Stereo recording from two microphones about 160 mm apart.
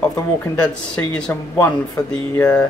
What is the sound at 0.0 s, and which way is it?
Speech, 20° left (ahead or behind).